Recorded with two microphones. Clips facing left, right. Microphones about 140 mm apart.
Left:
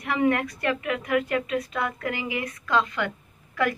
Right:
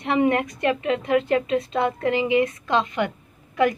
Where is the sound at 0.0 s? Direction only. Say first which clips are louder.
Right 3 dB; 25° right (ahead or behind).